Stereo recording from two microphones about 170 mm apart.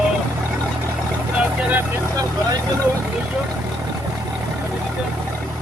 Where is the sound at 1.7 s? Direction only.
20° right (ahead or behind).